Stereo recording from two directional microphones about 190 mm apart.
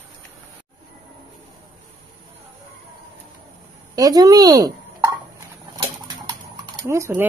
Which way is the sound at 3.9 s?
20° right (ahead or behind).